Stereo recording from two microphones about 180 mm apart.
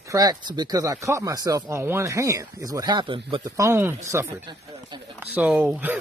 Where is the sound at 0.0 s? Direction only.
20° right (ahead or behind).